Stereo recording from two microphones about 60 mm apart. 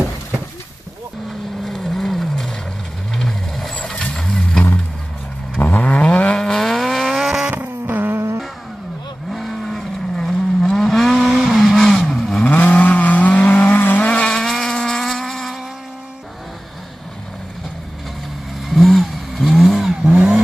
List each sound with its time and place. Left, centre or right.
1.6 s vehicle: centre
5.6 s vehicle: left; by 7.4 s centre
7.4 s vehicle: right
9.3 s vehicle: centre
12.4 s vehicle: left
14.2 s vehicle: centre
18.7 s vehicle: centre
20.1 s vehicle: centre